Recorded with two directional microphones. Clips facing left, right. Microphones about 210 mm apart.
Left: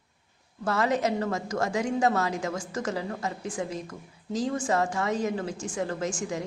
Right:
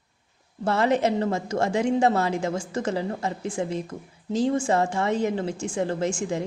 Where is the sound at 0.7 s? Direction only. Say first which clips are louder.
Right 4 dB; 30° right (ahead or behind).